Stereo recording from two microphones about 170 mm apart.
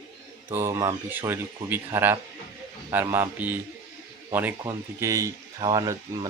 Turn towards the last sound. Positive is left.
turn(degrees=-20)  # may be behind; listen again after turning